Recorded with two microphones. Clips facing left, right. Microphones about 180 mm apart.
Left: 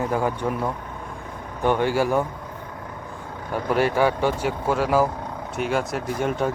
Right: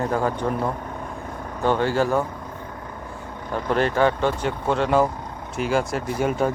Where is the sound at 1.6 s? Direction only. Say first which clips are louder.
Even; 15° left (ahead or behind).